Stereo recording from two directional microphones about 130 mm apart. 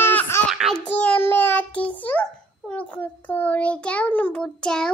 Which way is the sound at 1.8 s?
10° left (ahead or behind).